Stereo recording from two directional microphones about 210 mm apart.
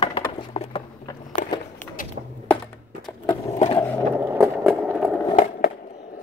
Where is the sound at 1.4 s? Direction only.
40° left (ahead or behind).